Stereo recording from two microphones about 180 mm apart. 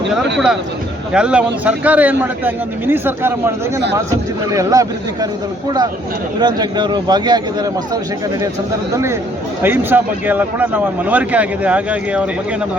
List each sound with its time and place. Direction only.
1.1 s a man's voice: 5° right (ahead or behind)
4.5 s a man's voice: 20° right (ahead or behind)
9.6 s a man's voice: 10° right (ahead or behind)